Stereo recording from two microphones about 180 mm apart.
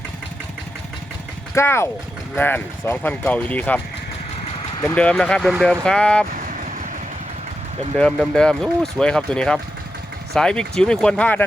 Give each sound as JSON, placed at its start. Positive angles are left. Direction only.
{"t": 1.5, "sound": "speech", "side_deg": 15}
{"t": 4.9, "sound": "speech", "side_deg": 5}
{"t": 7.9, "sound": "speech", "side_deg": 5}